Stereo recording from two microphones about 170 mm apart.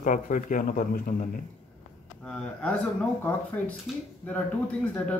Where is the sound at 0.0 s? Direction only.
50° left (ahead or behind).